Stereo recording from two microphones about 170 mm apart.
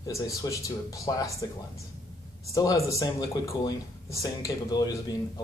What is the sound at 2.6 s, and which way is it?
Speech, 20° left (ahead or behind).